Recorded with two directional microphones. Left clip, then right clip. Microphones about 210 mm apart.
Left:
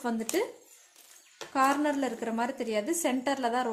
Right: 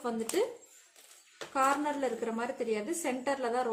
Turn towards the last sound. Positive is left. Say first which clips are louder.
# left 2 dB
turn(degrees=35)  # may be behind; listen again after turning